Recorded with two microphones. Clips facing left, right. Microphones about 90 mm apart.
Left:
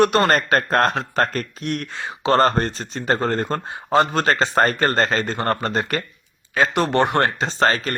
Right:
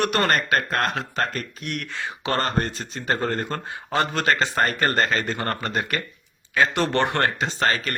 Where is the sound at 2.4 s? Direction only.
40° left (ahead or behind).